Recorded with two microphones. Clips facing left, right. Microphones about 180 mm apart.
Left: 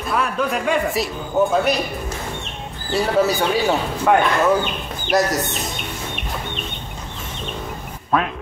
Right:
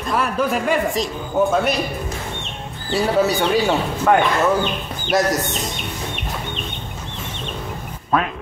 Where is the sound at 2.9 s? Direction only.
Centre (ahead or behind).